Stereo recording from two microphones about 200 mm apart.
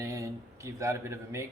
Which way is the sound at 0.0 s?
15° right (ahead or behind).